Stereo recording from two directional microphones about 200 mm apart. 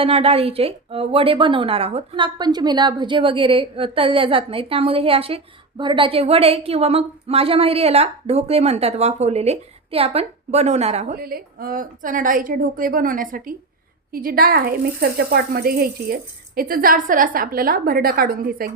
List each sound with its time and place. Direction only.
0.0 s speech: 30° right (ahead or behind)
11.1 s a woman's voice: 50° right (ahead or behind)